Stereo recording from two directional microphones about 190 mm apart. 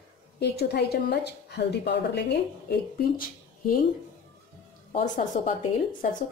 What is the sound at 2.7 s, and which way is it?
A woman's voice, 50° left (ahead or behind).